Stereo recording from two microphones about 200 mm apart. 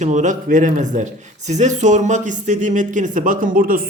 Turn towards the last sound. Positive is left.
turn(degrees=-45)  # may be behind; listen again after turning